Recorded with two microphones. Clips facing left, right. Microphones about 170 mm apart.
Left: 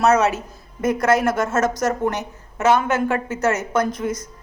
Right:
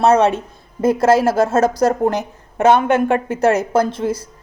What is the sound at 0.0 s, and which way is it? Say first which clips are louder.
A woman's voice: right 4 dB; 30° right (ahead or behind).